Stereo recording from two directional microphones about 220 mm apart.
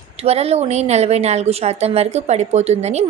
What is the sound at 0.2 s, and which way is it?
A woman's voice, 25° right (ahead or behind).